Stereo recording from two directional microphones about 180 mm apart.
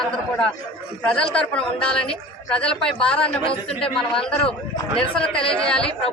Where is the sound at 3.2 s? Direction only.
30° left (ahead or behind).